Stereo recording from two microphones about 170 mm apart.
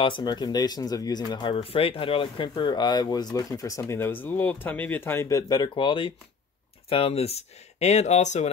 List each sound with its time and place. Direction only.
0.0 s speech: 25° left (ahead or behind)